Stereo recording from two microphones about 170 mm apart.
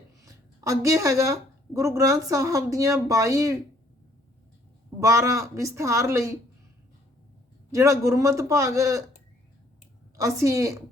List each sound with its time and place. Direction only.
0.3 s a woman's voice: 20° right (ahead or behind)
4.9 s a man's voice: 20° right (ahead or behind)
7.7 s a man's voice: 20° right (ahead or behind)
10.2 s a man's voice: 20° right (ahead or behind)